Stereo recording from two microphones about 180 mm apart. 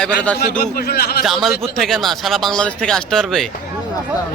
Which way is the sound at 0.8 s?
60° left (ahead or behind).